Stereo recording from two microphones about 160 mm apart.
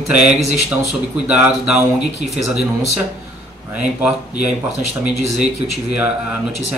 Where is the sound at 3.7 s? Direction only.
10° right (ahead or behind).